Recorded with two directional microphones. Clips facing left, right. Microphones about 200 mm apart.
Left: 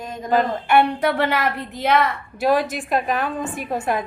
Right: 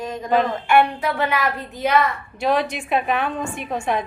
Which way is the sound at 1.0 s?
70° left (ahead or behind).